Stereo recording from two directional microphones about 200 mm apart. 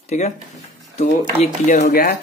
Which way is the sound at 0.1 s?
35° left (ahead or behind).